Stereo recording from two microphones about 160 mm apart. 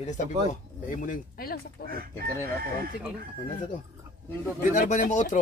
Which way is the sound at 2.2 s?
70° right (ahead or behind).